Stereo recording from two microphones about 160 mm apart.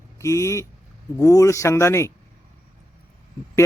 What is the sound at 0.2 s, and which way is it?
Speech, 20° left (ahead or behind).